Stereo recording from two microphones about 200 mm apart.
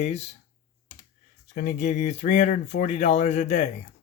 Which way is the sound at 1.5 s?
40° left (ahead or behind).